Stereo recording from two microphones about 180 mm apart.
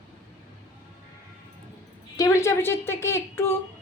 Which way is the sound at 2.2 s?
15° left (ahead or behind).